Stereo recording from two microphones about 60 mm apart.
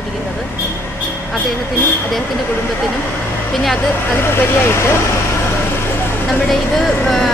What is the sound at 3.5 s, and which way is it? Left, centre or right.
Speech, centre.